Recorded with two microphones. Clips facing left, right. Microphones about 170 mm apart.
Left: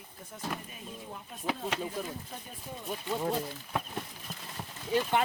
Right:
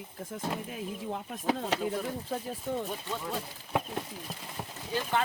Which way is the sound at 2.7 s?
75° right (ahead or behind).